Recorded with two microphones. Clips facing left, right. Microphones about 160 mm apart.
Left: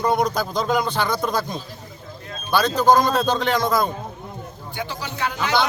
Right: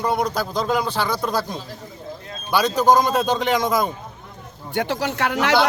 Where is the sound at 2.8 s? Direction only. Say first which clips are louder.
Even; 15° right (ahead or behind).